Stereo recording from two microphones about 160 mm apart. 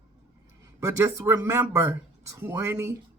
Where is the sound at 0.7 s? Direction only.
15° right (ahead or behind).